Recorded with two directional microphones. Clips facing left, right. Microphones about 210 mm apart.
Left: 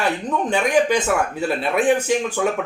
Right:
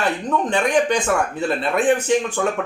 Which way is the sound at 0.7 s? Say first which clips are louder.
Left 2 dB; 10° left (ahead or behind).